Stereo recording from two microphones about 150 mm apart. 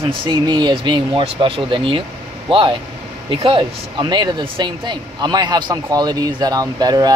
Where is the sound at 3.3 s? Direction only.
35° right (ahead or behind).